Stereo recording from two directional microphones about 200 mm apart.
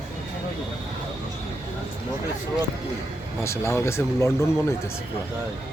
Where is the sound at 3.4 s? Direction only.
15° left (ahead or behind).